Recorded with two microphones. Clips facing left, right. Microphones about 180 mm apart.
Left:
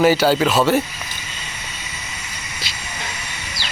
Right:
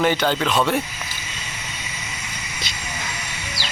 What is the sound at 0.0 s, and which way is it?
Speech, 5° left (ahead or behind).